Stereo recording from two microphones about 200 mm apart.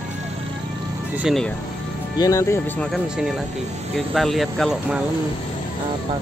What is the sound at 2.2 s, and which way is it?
Speech, 15° left (ahead or behind).